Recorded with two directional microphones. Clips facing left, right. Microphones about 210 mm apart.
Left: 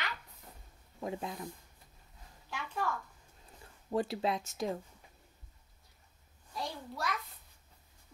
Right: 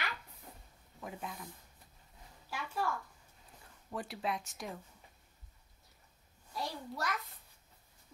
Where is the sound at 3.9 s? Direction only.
25° left (ahead or behind).